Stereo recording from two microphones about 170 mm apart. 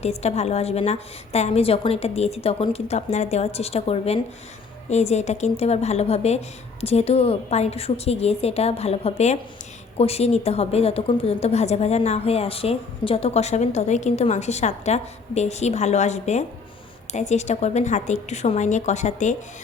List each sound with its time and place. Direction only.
0.0 s a woman's voice: 40° left (ahead or behind)